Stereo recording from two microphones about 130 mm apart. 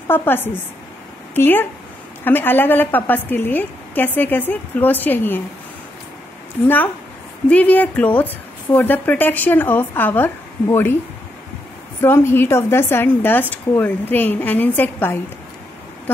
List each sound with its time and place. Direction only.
0.1 s speech: 15° left (ahead or behind)
7.4 s speech: 10° left (ahead or behind)
12.0 s speech: 20° left (ahead or behind)